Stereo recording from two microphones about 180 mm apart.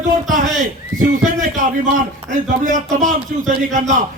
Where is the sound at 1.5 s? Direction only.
45° right (ahead or behind).